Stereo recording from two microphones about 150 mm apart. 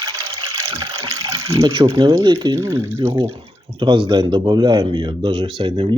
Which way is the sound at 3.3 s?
40° right (ahead or behind).